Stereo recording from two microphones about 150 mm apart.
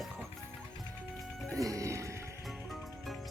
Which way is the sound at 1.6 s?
20° right (ahead or behind).